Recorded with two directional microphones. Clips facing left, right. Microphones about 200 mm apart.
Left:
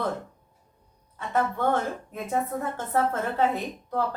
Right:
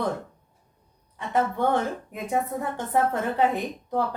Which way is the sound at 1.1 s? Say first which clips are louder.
Right 1 dB; 15° right (ahead or behind).